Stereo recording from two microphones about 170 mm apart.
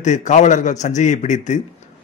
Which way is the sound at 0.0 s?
45° left (ahead or behind).